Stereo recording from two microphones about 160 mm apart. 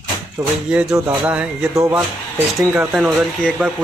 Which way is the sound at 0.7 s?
5° right (ahead or behind).